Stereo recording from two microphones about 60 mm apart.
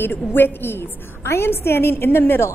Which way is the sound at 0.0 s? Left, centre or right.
Left.